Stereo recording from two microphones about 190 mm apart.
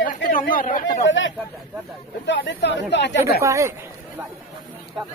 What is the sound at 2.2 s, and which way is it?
Speech, 65° left (ahead or behind).